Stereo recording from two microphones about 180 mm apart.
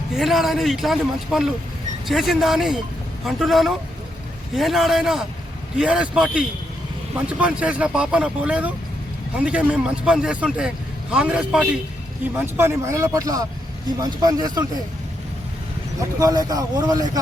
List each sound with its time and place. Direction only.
0.1 s a man's voice: centre (ahead or behind); by 14.6 s 20° right (ahead or behind)
16.1 s a man's voice: 20° right (ahead or behind)